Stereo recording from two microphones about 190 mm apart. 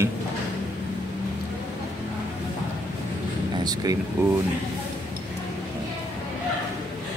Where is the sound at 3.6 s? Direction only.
20° right (ahead or behind).